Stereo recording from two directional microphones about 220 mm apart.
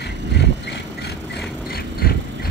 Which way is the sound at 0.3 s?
50° left (ahead or behind).